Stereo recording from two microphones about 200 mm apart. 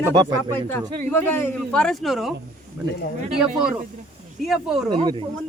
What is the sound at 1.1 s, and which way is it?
Speech, 10° left (ahead or behind).